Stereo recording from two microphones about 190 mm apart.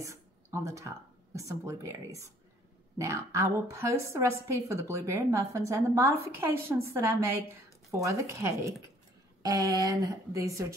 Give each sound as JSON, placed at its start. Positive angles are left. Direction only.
{"t": 0.0, "sound": "a woman's voice", "side_deg": -15}